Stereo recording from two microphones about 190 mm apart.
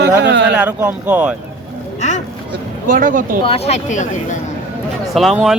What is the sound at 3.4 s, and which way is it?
Speech, 30° left (ahead or behind).